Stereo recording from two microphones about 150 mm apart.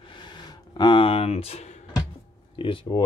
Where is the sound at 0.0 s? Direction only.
30° left (ahead or behind).